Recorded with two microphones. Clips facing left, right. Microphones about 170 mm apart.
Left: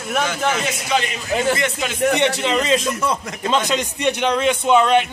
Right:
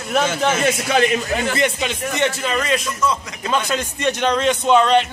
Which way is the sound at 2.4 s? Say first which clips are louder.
Left 3 dB; 25° left (ahead or behind).